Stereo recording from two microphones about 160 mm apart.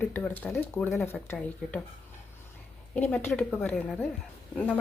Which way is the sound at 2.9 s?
10° left (ahead or behind).